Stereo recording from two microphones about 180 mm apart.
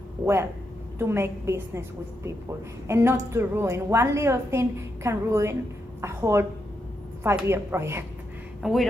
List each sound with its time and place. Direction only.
0.9 s a woman's voice: 15° right (ahead or behind)
8.6 s speech: centre (ahead or behind)